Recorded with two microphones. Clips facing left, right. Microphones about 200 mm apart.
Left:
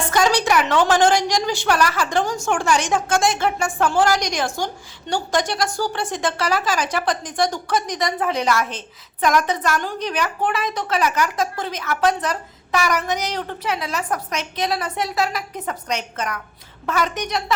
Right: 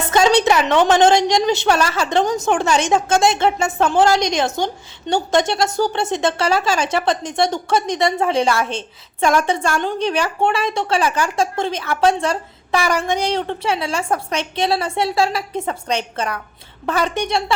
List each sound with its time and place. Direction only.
0.0 s a woman's voice: 25° right (ahead or behind)